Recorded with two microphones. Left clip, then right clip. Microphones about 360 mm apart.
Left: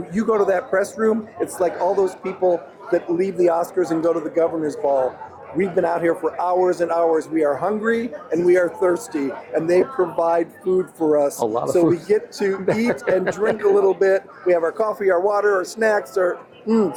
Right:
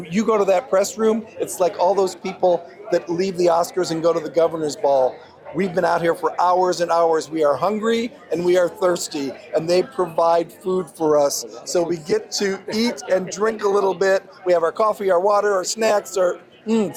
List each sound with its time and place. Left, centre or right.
0.3 s speech: right